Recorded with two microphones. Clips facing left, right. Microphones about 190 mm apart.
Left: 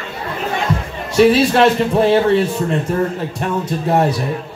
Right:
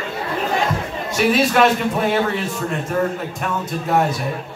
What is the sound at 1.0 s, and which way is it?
A man's voice, 30° left (ahead or behind).